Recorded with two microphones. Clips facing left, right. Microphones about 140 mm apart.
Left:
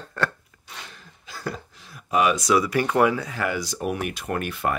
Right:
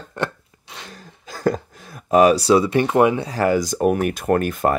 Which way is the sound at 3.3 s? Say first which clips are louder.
Right 9 dB; 40° right (ahead or behind).